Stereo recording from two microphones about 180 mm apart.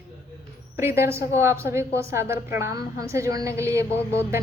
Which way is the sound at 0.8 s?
15° right (ahead or behind).